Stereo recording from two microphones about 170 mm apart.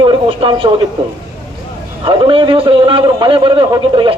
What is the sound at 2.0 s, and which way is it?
A man's voice, 30° right (ahead or behind).